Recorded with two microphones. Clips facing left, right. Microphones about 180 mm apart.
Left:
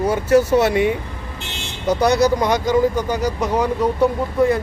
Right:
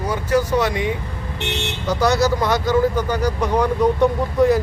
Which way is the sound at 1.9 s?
20° left (ahead or behind).